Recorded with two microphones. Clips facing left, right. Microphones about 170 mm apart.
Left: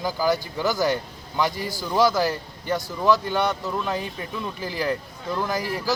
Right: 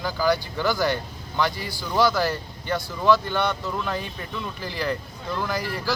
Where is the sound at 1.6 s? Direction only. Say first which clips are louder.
Left 4 dB; 40° left (ahead or behind).